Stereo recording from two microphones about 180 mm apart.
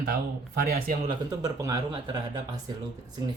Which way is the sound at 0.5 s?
60° right (ahead or behind).